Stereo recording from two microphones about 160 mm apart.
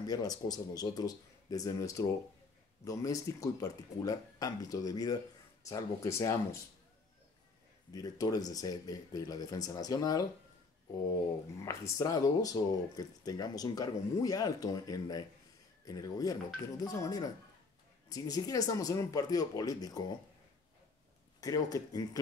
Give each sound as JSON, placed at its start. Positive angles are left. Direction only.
{"t": 0.0, "sound": "speech", "side_deg": 25}
{"t": 7.9, "sound": "speech", "side_deg": 25}
{"t": 11.6, "sound": "speech", "side_deg": 20}
{"t": 21.4, "sound": "speech", "side_deg": 25}